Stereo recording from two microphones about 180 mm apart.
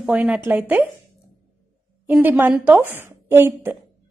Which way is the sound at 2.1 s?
10° right (ahead or behind).